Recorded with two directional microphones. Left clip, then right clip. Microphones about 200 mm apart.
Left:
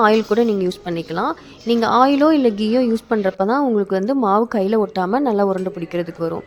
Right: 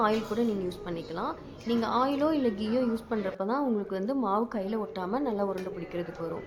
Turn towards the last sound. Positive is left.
turn(degrees=40)  # may be behind; listen again after turning